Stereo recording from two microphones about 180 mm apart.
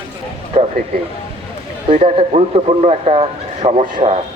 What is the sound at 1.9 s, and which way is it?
A man's voice, 30° right (ahead or behind).